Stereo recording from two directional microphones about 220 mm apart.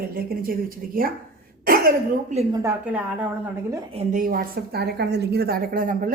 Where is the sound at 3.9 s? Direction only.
30° right (ahead or behind).